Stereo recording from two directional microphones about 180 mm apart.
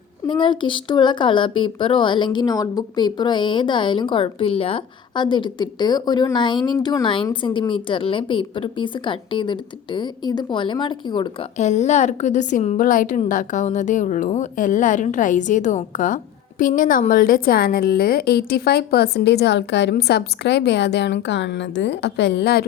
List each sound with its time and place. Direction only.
0.3 s speech: 25° left (ahead or behind)
11.5 s a woman's voice: 40° left (ahead or behind); by 22.6 s 65° left (ahead or behind)